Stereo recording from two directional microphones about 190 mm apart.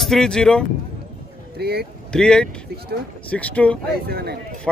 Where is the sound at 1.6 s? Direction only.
55° right (ahead or behind).